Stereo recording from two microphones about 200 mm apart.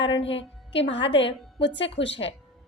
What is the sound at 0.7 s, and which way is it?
A woman's voice, 65° left (ahead or behind).